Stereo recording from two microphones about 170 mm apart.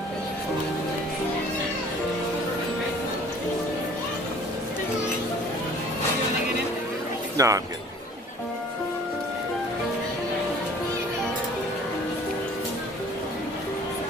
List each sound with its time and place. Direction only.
7.3 s speech: 20° right (ahead or behind)